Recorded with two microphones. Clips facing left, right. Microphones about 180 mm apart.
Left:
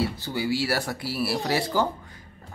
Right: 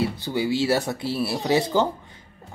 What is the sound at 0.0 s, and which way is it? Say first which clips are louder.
Speech: right 3 dB; 20° right (ahead or behind).